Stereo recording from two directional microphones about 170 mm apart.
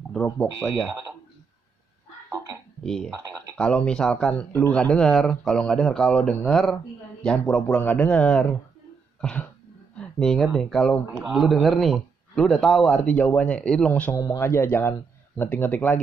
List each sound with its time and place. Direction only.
0.1 s speech: 5° left (ahead or behind)
2.8 s speech: 5° left (ahead or behind)
14.1 s speech: 20° left (ahead or behind)